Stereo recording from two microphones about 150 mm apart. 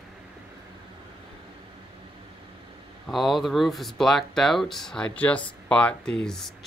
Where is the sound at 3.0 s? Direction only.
Centre (ahead or behind).